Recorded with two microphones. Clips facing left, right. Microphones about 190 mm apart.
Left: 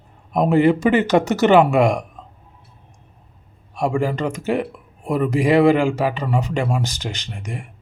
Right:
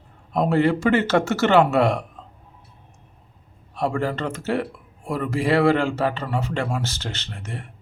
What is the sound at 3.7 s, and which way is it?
Speech, 15° left (ahead or behind).